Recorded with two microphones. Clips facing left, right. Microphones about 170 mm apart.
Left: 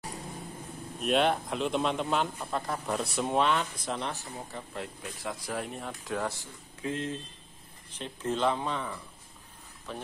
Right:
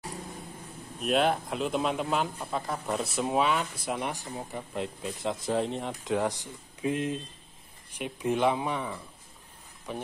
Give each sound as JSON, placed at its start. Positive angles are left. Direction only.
{"t": 0.9, "sound": "speech", "side_deg": 0}